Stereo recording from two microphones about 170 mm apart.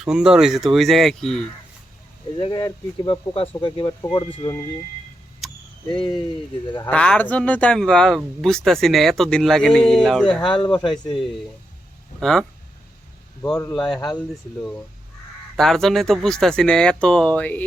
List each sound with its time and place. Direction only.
0.0 s speech: 5° right (ahead or behind)
2.4 s speech: 25° left (ahead or behind)
5.4 s a sound: centre (ahead or behind)
5.9 s speech: 30° left (ahead or behind)
6.8 s speech: 5° left (ahead or behind)
10.4 s speech: 30° left (ahead or behind)
12.2 s speech: 5° left (ahead or behind)
13.4 s a man's voice: 15° left (ahead or behind)
15.5 s speech: centre (ahead or behind)